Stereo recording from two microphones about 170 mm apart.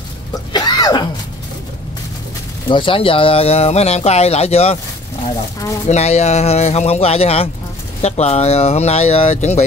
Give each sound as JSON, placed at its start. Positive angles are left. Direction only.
{"t": 0.5, "sound": "throat clearing", "side_deg": 25}
{"t": 2.7, "sound": "speech", "side_deg": 30}
{"t": 5.9, "sound": "speech", "side_deg": 40}